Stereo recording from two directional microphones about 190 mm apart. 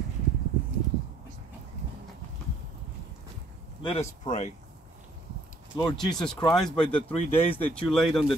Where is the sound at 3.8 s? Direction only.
35° left (ahead or behind).